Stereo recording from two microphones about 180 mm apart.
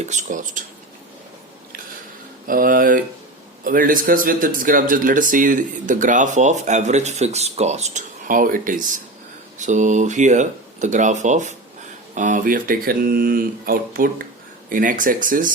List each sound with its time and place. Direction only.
0.0 s speech: 40° right (ahead or behind)
2.5 s speech: 50° right (ahead or behind)